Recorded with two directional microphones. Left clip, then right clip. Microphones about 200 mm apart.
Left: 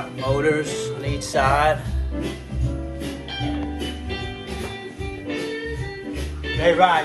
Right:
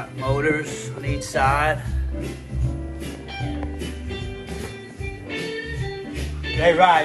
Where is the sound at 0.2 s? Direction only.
15° left (ahead or behind).